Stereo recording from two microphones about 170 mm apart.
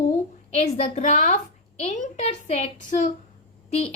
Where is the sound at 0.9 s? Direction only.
45° left (ahead or behind).